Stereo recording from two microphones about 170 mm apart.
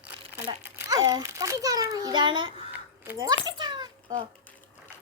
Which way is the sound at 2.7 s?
10° right (ahead or behind).